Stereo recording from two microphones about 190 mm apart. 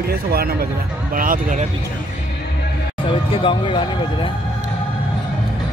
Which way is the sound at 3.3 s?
25° left (ahead or behind).